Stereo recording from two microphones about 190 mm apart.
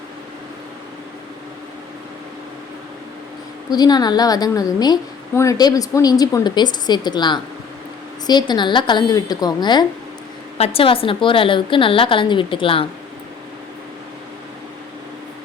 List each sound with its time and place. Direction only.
3.7 s a woman's voice: 20° left (ahead or behind)